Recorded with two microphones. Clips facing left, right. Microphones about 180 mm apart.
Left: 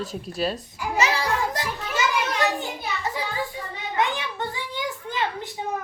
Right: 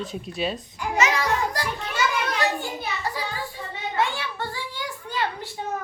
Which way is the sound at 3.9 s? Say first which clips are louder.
Left 1 dB; 15° left (ahead or behind).